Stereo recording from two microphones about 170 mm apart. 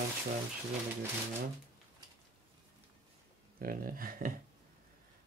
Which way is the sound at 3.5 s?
60° right (ahead or behind).